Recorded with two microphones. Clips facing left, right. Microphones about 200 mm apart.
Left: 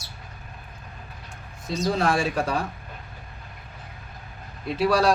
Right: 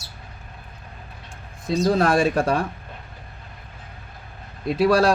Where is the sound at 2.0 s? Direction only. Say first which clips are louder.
Right 4 dB; 55° right (ahead or behind).